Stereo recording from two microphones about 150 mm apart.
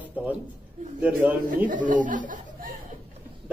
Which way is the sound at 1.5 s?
60° right (ahead or behind).